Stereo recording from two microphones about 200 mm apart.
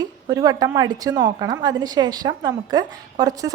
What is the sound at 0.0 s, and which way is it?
A woman's voice, 20° right (ahead or behind).